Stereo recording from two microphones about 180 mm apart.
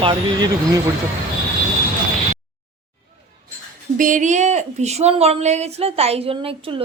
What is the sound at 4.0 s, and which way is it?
Speech, 45° right (ahead or behind).